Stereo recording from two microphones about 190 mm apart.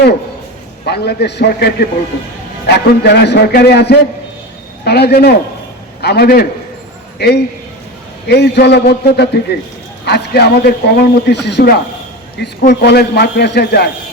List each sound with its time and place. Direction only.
0.9 s a man's voice: 60° left (ahead or behind)